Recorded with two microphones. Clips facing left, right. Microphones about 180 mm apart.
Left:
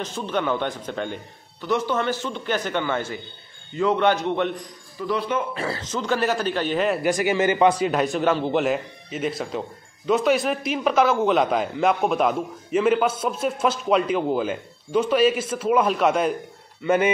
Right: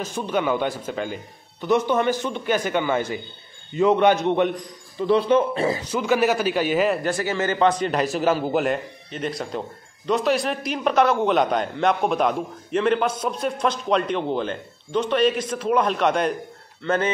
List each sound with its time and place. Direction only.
0.0 s speech: 10° right (ahead or behind)
1.6 s a man's voice: 20° right (ahead or behind)
5.7 s speech: 10° right (ahead or behind)
7.0 s a man's voice: 15° left (ahead or behind)